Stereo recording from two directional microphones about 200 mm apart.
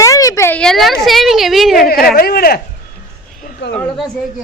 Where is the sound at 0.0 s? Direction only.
15° left (ahead or behind).